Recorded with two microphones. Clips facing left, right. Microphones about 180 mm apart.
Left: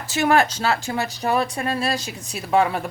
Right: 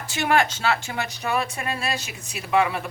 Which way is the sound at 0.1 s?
35° left (ahead or behind).